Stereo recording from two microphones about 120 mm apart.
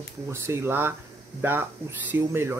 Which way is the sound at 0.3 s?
20° right (ahead or behind).